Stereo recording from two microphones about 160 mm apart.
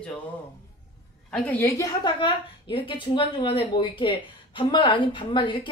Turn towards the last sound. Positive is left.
turn(degrees=30)  # may be behind; listen again after turning